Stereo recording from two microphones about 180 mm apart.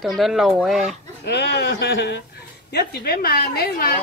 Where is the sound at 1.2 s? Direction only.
70° left (ahead or behind).